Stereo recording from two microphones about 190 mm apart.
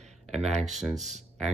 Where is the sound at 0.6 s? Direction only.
Centre (ahead or behind).